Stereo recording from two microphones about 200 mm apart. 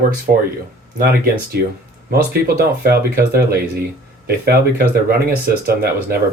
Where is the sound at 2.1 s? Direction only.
50° right (ahead or behind).